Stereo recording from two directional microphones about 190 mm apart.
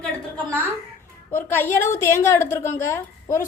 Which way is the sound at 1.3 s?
10° left (ahead or behind).